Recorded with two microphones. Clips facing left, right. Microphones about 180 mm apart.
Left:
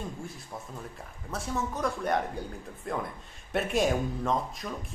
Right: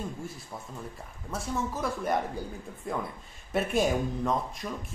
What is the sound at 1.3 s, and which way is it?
Speech, centre (ahead or behind).